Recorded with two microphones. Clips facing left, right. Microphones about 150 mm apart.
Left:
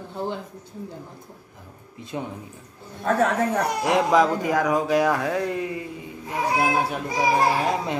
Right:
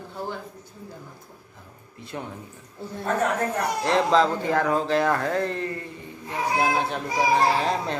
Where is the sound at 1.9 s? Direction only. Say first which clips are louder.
Left 3 dB; 15° left (ahead or behind).